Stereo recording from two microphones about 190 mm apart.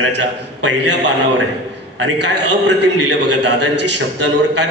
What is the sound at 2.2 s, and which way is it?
A man's voice, 65° right (ahead or behind).